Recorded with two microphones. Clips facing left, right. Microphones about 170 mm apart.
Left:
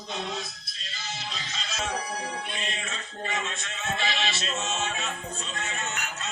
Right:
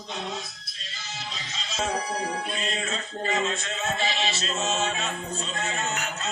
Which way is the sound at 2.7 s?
35° right (ahead or behind).